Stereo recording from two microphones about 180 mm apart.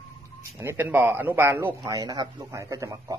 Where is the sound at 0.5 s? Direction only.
15° right (ahead or behind).